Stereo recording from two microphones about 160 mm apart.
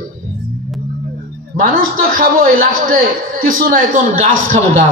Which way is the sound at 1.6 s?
60° right (ahead or behind).